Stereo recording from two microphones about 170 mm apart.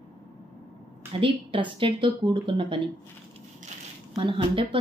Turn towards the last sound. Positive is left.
turn(degrees=-30)  # may be behind; listen again after turning